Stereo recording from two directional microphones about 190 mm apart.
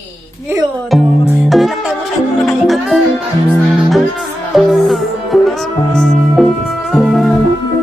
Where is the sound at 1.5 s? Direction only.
Centre (ahead or behind).